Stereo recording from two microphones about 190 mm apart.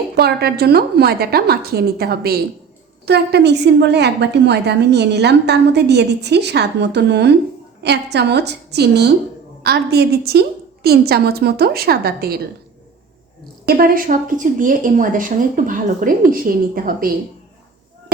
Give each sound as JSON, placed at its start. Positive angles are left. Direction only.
{"t": 0.2, "sound": "a woman's voice", "side_deg": -55}
{"t": 13.7, "sound": "speech", "side_deg": -50}